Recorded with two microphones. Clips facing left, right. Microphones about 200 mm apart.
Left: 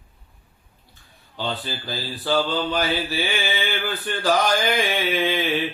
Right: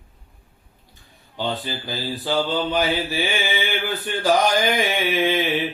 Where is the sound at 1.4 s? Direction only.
15° right (ahead or behind).